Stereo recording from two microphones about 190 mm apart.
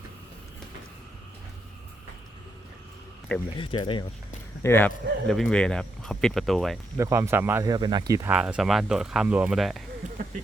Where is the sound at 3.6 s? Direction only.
25° left (ahead or behind).